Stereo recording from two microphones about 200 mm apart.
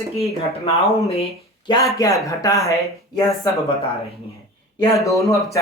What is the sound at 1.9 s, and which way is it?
Speech, 15° left (ahead or behind).